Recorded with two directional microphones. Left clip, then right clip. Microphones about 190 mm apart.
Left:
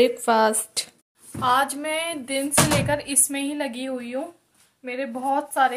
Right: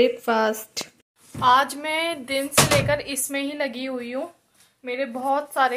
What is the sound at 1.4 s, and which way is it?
Speech, 15° right (ahead or behind).